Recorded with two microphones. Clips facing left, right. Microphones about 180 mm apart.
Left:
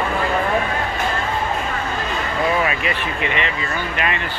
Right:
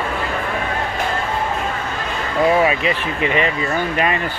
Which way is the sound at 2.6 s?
30° right (ahead or behind).